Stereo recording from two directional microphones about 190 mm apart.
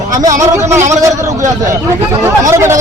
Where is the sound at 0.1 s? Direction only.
20° right (ahead or behind).